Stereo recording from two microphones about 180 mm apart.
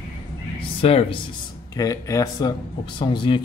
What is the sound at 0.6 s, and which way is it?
Speech, 30° left (ahead or behind).